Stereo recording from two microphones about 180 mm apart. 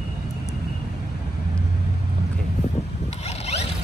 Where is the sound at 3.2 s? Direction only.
35° left (ahead or behind).